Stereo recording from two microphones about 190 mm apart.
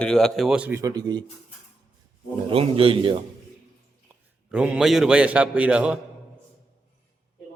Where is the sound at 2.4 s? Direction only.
30° right (ahead or behind).